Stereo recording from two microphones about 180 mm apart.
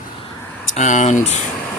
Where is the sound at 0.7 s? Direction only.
40° left (ahead or behind).